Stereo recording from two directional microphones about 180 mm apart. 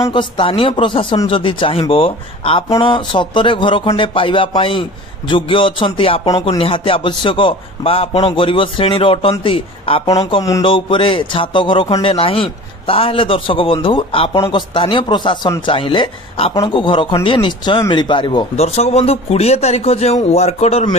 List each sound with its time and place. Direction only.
0.0 s a man's voice: 25° left (ahead or behind)
6.2 s a man's voice: 20° left (ahead or behind); by 21.0 s 40° left (ahead or behind)